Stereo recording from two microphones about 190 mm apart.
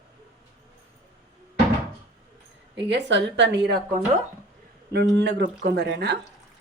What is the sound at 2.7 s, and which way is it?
A woman's voice, 70° right (ahead or behind).